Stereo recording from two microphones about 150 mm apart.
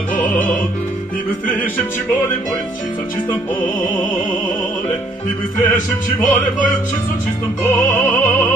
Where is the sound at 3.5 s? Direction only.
10° left (ahead or behind).